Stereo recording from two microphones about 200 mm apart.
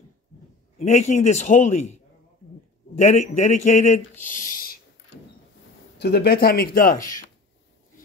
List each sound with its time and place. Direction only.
0.7 s speech: 35° left (ahead or behind)
3.0 s speech: 35° left (ahead or behind)
5.9 s speech: 55° left (ahead or behind)